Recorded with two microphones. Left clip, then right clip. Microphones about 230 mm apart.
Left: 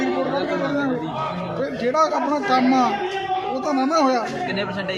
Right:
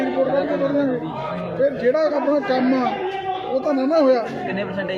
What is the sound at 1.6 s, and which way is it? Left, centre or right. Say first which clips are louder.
Speech: right 2 dB; left.